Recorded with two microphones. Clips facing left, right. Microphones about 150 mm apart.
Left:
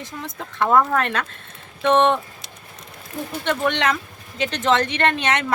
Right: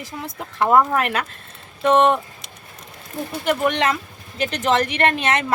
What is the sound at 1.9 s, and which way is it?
Speech, 5° right (ahead or behind).